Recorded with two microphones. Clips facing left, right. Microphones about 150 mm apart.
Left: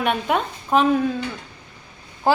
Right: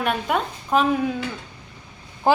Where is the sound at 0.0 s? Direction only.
Centre (ahead or behind).